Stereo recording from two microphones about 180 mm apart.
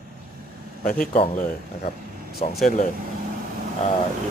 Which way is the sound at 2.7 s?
50° left (ahead or behind).